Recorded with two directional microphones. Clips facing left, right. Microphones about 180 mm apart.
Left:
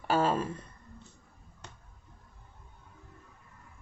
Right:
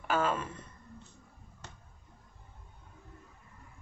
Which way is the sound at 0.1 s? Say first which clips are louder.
Left 3 dB; 35° left (ahead or behind).